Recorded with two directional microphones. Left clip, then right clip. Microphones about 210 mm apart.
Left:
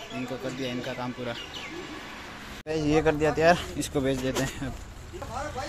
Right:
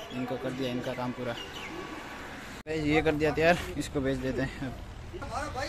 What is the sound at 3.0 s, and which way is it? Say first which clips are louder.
Speech: left 4 dB; centre (ahead or behind).